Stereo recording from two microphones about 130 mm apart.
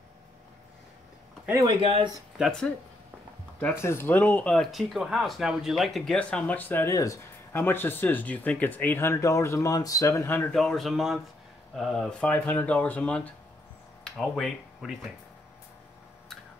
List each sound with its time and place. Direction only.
1.5 s speech: 30° right (ahead or behind)
2.3 s speech: centre (ahead or behind)
3.5 s speech: 15° left (ahead or behind)
10.5 s a man's voice: centre (ahead or behind)